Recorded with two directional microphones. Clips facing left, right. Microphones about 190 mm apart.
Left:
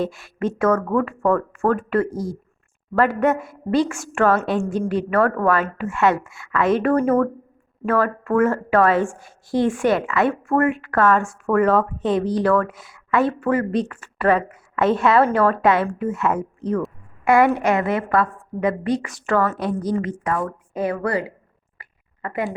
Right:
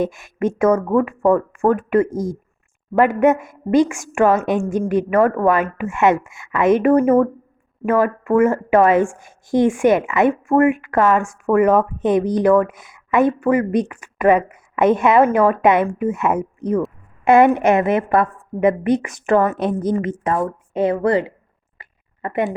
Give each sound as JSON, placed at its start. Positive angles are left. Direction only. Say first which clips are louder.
{"t": 0.0, "sound": "speech", "louder": "right 3 dB", "side_deg": -20}
{"t": 3.2, "sound": "a woman's voice", "louder": "right 4 dB", "side_deg": -15}
{"t": 21.8, "sound": "a sound", "louder": "right 3 dB", "side_deg": -20}